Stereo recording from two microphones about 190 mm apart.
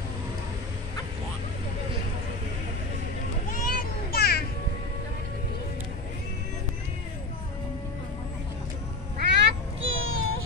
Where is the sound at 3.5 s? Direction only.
45° left (ahead or behind).